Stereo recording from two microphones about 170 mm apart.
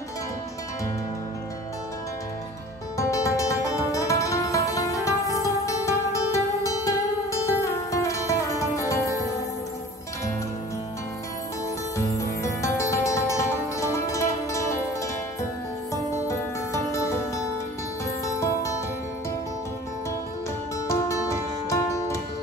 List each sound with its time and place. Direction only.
3.0 s music: 20° left (ahead or behind)
12.0 s music: 20° left (ahead or behind)
15.9 s music: 15° left (ahead or behind)
20.9 s music: 15° left (ahead or behind)